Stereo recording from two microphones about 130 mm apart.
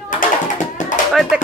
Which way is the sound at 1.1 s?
Centre (ahead or behind).